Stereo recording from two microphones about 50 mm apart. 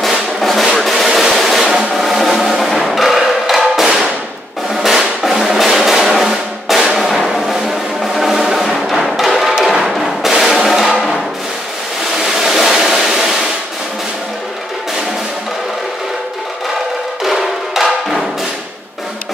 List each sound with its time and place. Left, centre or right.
0.4 s drum: centre
8.0 s music: centre
12.2 s a sound: centre
17.2 s music: centre